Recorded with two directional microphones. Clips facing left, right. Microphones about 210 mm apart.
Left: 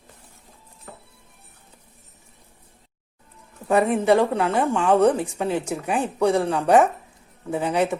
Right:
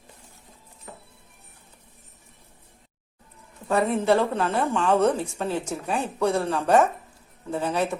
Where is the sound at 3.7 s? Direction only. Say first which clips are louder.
Left 3 dB; 15° left (ahead or behind).